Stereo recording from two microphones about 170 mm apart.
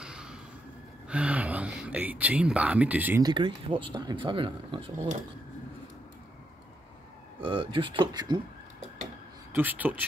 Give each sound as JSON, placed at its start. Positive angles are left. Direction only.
{"t": 0.0, "sound": "a sound", "side_deg": -5}
{"t": 1.0, "sound": "speech", "side_deg": -5}
{"t": 3.2, "sound": "speech", "side_deg": -25}
{"t": 7.4, "sound": "speech", "side_deg": -30}
{"t": 9.5, "sound": "speech", "side_deg": -10}